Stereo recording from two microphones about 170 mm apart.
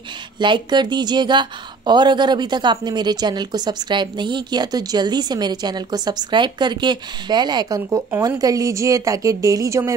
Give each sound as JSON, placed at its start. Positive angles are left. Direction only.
{"t": 0.4, "sound": "a woman's voice", "side_deg": -25}